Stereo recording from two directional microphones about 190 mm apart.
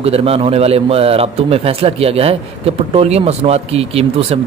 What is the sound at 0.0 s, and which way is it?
A man's voice, 30° right (ahead or behind).